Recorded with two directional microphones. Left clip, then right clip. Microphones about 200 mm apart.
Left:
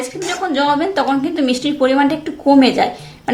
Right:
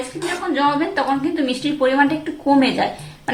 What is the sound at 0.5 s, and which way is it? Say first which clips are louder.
A woman's voice: left 3 dB; 45° left (ahead or behind).